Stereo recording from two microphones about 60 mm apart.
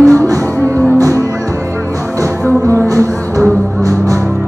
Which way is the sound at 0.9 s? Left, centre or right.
Right.